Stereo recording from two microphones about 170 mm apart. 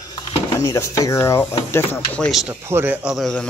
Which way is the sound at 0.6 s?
20° left (ahead or behind).